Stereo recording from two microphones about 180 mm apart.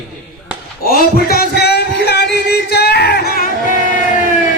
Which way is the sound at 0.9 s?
60° left (ahead or behind).